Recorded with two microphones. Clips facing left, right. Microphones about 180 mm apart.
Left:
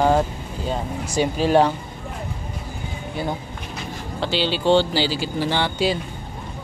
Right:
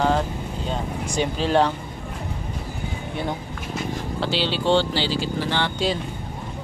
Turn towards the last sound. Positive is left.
turn(degrees=10)  # may be behind; listen again after turning